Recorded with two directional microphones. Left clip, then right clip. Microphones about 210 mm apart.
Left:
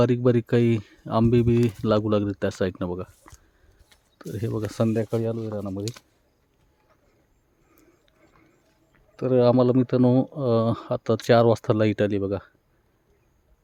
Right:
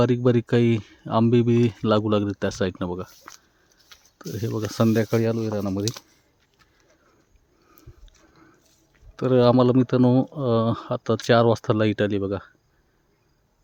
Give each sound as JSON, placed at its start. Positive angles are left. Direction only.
{"t": 0.0, "sound": "speech", "side_deg": -5}
{"t": 3.9, "sound": "a sound", "side_deg": -25}
{"t": 4.3, "sound": "speech", "side_deg": -5}
{"t": 4.9, "sound": "speech", "side_deg": -25}
{"t": 9.1, "sound": "speech", "side_deg": -10}